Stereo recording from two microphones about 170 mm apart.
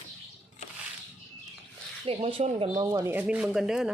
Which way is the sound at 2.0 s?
35° right (ahead or behind).